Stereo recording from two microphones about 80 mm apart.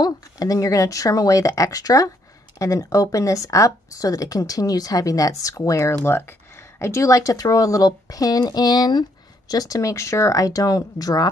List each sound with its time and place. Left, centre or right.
0.0 s speech: left
9.5 s speech: left